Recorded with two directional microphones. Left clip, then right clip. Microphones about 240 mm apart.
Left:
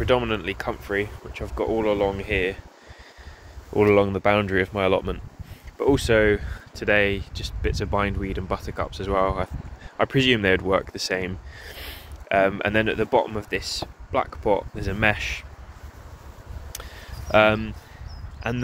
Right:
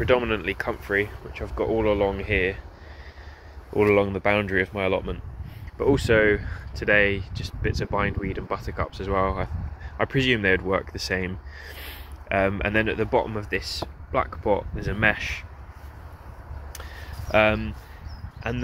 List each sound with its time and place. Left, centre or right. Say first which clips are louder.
0.0 s speech: even; centre
3.7 s speech: left 2 dB; left
5.8 s speech: left 1 dB; centre
17.3 s speech: left 2 dB; left